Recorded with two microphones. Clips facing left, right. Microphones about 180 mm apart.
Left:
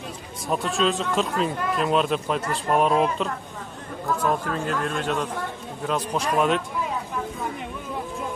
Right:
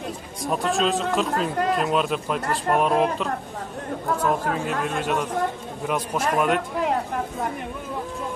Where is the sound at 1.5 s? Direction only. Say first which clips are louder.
Right 4 dB; 70° right (ahead or behind).